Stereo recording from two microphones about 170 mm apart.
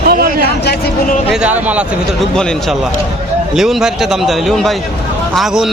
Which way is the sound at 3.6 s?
Centre (ahead or behind).